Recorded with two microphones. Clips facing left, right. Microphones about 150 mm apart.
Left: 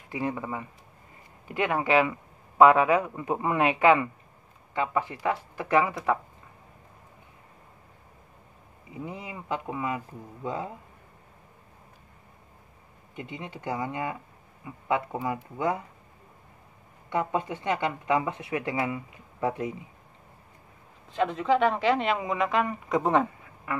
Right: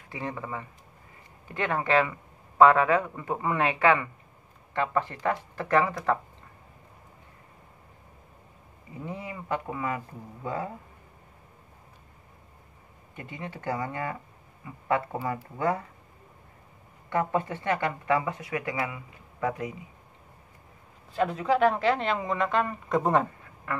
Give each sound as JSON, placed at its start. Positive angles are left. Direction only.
{"t": 0.1, "sound": "speech", "side_deg": 15}
{"t": 9.0, "sound": "speech", "side_deg": 15}
{"t": 13.1, "sound": "speech", "side_deg": 20}
{"t": 17.1, "sound": "speech", "side_deg": 15}
{"t": 21.1, "sound": "speech", "side_deg": -5}